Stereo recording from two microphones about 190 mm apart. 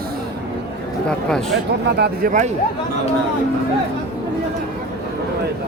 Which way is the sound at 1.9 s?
55° right (ahead or behind).